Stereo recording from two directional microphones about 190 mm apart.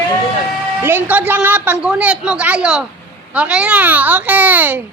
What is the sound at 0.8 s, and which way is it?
A woman's voice, 10° right (ahead or behind).